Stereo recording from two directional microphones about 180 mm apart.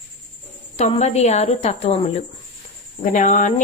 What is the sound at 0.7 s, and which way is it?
Music, 40° left (ahead or behind).